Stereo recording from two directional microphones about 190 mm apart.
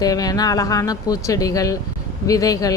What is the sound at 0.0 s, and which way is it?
Speech, 20° left (ahead or behind).